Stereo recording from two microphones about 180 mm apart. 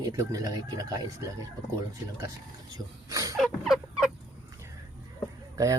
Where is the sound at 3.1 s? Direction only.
20° right (ahead or behind).